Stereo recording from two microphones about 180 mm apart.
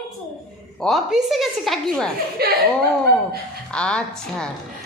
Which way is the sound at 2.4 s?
60° right (ahead or behind).